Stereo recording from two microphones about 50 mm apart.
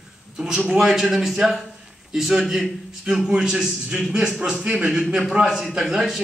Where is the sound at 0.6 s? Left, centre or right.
Centre.